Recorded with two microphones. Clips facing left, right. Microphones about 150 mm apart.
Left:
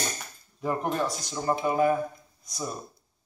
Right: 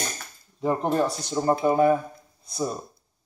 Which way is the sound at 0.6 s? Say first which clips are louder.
Right 5 dB; 25° right (ahead or behind).